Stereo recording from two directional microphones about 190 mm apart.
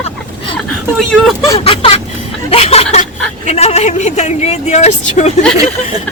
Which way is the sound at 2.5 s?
35° left (ahead or behind).